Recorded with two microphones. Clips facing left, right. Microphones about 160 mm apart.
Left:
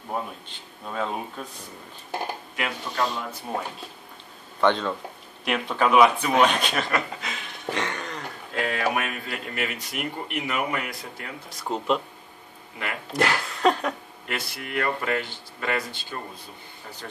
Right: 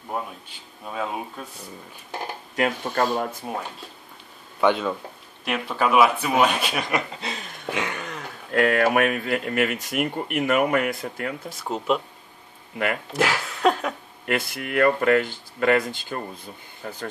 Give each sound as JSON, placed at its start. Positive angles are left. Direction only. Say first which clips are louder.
{"t": 0.5, "sound": "speech", "louder": "even", "side_deg": -5}
{"t": 2.5, "sound": "speech", "louder": "right 11 dB", "side_deg": -45}
{"t": 4.6, "sound": "speech", "louder": "right 1 dB", "side_deg": -10}
{"t": 7.2, "sound": "a sound", "louder": "right 3 dB", "side_deg": -35}
{"t": 7.7, "sound": "a sound", "louder": "right 1 dB", "side_deg": -5}
{"t": 8.5, "sound": "speech", "louder": "right 7 dB", "side_deg": -55}
{"t": 11.4, "sound": "speech", "louder": "left 1 dB", "side_deg": -5}
{"t": 13.1, "sound": "a sound", "louder": "right 1 dB", "side_deg": 0}
{"t": 14.2, "sound": "speech", "louder": "right 7 dB", "side_deg": -55}